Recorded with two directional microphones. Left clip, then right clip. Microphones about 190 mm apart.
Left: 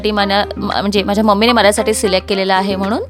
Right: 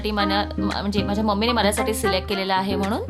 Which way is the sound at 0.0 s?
40° left (ahead or behind).